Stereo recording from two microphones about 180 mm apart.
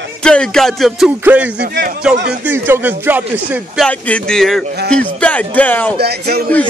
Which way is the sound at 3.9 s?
5° left (ahead or behind).